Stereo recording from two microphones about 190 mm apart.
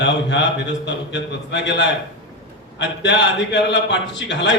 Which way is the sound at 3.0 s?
70° left (ahead or behind).